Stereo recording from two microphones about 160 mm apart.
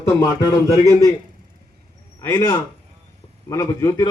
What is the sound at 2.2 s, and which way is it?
A man's voice, 20° left (ahead or behind).